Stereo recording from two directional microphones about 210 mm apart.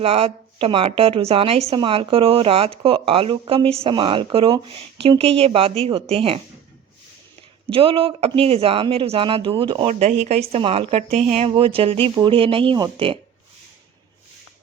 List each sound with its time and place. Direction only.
0.0 s speech: 30° right (ahead or behind)
7.7 s speech: 25° right (ahead or behind)